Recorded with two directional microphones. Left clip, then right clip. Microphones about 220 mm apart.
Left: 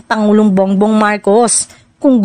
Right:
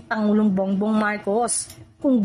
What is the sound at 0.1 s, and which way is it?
A woman's voice, 40° left (ahead or behind).